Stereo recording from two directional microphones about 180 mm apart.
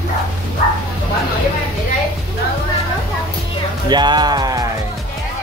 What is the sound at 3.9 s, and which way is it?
Speech, 25° right (ahead or behind).